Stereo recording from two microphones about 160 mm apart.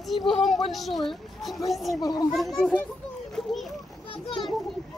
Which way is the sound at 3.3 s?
Centre (ahead or behind).